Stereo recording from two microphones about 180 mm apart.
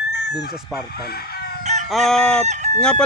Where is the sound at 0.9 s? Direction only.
60° left (ahead or behind).